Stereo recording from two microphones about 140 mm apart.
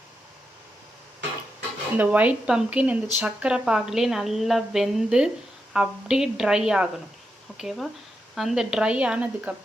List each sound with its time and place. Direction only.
2.0 s a woman's voice: 10° right (ahead or behind)